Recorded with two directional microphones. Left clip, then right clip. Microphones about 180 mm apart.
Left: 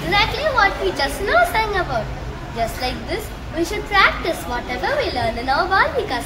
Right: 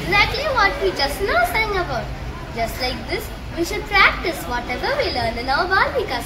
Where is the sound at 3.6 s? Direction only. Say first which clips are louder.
Even; 15° left (ahead or behind).